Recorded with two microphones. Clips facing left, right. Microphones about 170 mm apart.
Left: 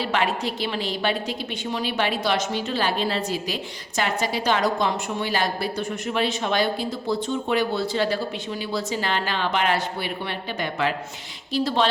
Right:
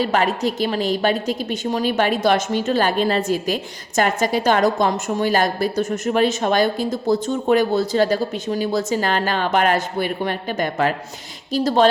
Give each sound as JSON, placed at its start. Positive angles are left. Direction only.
{"t": 0.0, "sound": "a woman's voice", "side_deg": -40}